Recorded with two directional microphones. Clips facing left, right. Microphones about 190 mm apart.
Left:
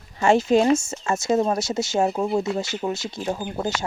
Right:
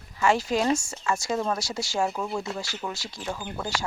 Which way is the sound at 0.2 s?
25° left (ahead or behind).